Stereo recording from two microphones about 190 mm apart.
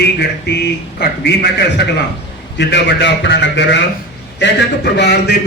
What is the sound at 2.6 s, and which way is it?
A man's voice, 65° left (ahead or behind).